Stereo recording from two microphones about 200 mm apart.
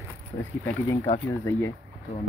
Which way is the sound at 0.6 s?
10° left (ahead or behind).